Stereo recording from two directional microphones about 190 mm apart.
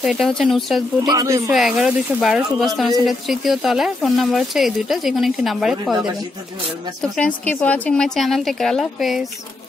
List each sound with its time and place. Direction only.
0.0 s speech: centre (ahead or behind)
1.0 s speech: 15° right (ahead or behind)
1.5 s speech: centre (ahead or behind)
7.0 s speech: 5° left (ahead or behind)